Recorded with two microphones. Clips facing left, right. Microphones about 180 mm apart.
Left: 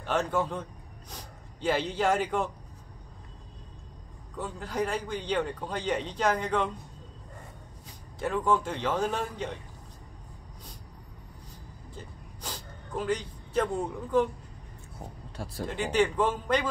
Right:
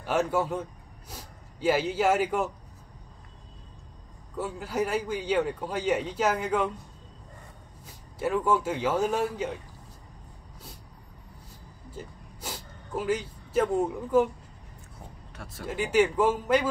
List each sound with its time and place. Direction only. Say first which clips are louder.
0.0 s a man's voice: right 2 dB; 5° right (ahead or behind)
4.4 s a man's voice: right 2 dB; 5° right (ahead or behind)
8.2 s a man's voice: right 2 dB; 5° right (ahead or behind)
11.9 s a sound: right 5 dB; 10° right (ahead or behind)
15.3 s speech: left 6 dB; 35° left (ahead or behind)
15.6 s a man's voice: right 2 dB; 5° right (ahead or behind)